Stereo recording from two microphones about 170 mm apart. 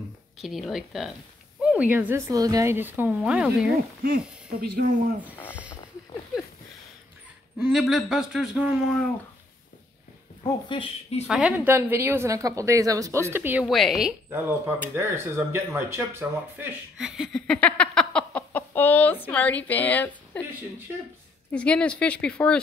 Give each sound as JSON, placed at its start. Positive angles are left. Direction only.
{"t": 0.4, "sound": "a woman's voice", "side_deg": 0}
{"t": 4.5, "sound": "speech", "side_deg": -60}
{"t": 5.5, "sound": "a sound", "side_deg": -10}
{"t": 7.5, "sound": "speech", "side_deg": -5}
{"t": 10.4, "sound": "speech", "side_deg": 30}
{"t": 11.2, "sound": "a woman's voice", "side_deg": -5}
{"t": 13.7, "sound": "speech", "side_deg": 0}
{"t": 14.3, "sound": "speech", "side_deg": -15}
{"t": 21.5, "sound": "speech", "side_deg": 5}